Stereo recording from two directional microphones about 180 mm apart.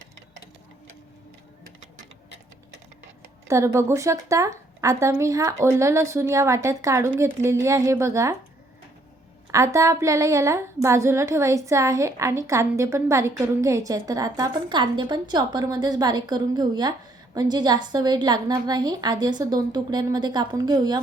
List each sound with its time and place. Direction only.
3.5 s a woman's voice: 15° right (ahead or behind)
9.5 s a woman's voice: 15° right (ahead or behind)